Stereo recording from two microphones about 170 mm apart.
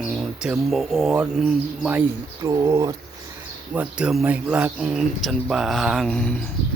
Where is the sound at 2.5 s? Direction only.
20° right (ahead or behind).